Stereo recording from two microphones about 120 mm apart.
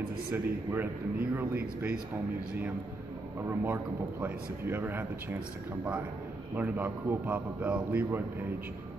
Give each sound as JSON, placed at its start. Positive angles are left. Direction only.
{"t": 0.3, "sound": "a man's voice", "side_deg": -15}
{"t": 3.3, "sound": "a man's voice", "side_deg": -15}
{"t": 6.5, "sound": "a man's voice", "side_deg": -15}